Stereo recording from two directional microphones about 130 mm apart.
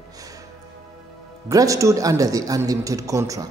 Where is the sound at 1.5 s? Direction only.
25° right (ahead or behind).